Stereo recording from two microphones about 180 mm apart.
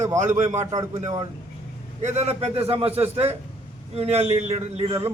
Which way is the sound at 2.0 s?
35° right (ahead or behind).